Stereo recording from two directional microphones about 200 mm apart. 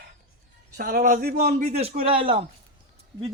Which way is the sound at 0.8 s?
45° right (ahead or behind).